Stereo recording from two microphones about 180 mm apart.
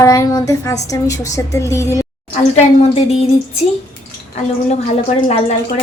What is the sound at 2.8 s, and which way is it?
A woman's voice, 35° left (ahead or behind).